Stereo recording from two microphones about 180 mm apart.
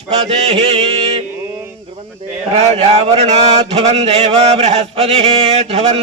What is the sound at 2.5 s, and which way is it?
Speech, 35° right (ahead or behind).